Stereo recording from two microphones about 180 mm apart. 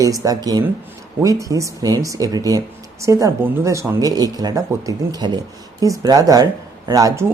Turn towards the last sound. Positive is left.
turn(degrees=-15)  # may be behind; listen again after turning